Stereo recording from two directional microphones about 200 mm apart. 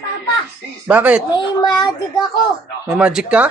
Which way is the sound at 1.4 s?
20° left (ahead or behind).